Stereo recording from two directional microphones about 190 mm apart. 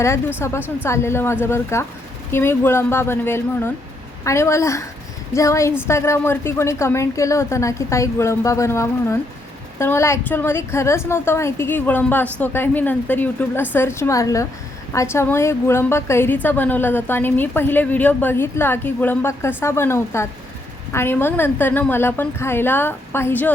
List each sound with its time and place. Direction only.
0.0 s a woman's voice: 15° left (ahead or behind)